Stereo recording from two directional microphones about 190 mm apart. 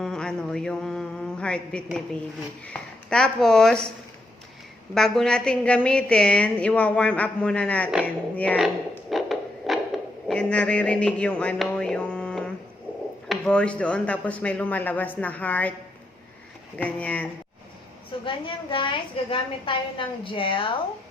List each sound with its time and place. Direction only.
0.0 s a sound: 5° left (ahead or behind)
2.6 s a woman's voice: 5° left (ahead or behind)
4.9 s a woman's voice: centre (ahead or behind)
8.0 s a sound: 5° left (ahead or behind)
13.2 s speech: 5° left (ahead or behind)
16.7 s speech: 5° left (ahead or behind)
18.3 s a woman's voice: 25° left (ahead or behind)